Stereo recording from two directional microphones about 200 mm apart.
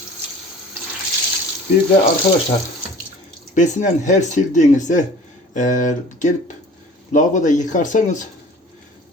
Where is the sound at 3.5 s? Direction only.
40° left (ahead or behind).